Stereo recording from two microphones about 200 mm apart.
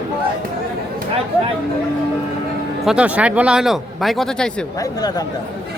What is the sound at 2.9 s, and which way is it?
Speech, 5° right (ahead or behind).